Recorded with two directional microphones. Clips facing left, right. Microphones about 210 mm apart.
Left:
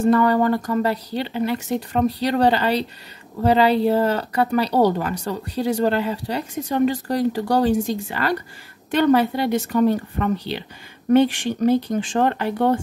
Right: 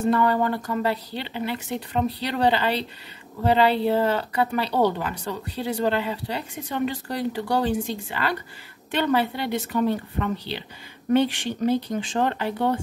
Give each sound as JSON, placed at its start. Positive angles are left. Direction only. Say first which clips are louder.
{"t": 0.0, "sound": "a woman's voice", "louder": "left 5 dB", "side_deg": 45}